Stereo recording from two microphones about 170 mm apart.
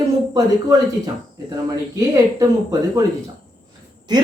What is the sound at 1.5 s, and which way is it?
Speech, 20° right (ahead or behind).